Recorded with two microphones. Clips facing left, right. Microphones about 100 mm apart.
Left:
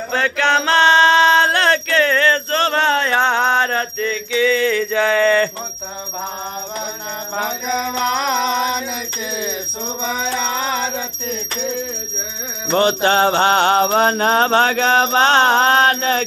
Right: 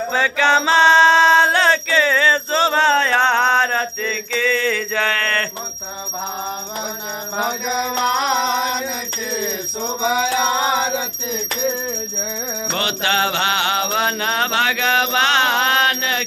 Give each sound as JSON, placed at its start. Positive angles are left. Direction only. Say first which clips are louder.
{"t": 0.1, "sound": "music", "louder": "even", "side_deg": -5}
{"t": 7.3, "sound": "music", "louder": "even", "side_deg": -5}
{"t": 10.0, "sound": "music", "louder": "right 4 dB", "side_deg": -10}
{"t": 12.7, "sound": "music", "louder": "left 7 dB", "side_deg": 35}